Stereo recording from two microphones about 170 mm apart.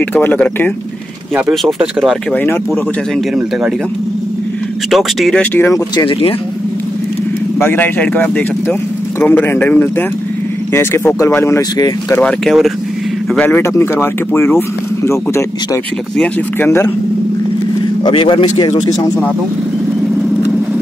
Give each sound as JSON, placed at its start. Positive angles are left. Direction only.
{"t": 0.1, "sound": "speech", "side_deg": 10}
{"t": 1.5, "sound": "speech", "side_deg": 0}
{"t": 2.3, "sound": "speech", "side_deg": 15}
{"t": 4.9, "sound": "speech", "side_deg": 5}
{"t": 5.9, "sound": "speech", "side_deg": 30}
{"t": 7.5, "sound": "speech", "side_deg": 15}
{"t": 12.3, "sound": "speech", "side_deg": 0}
{"t": 18.0, "sound": "speech", "side_deg": 30}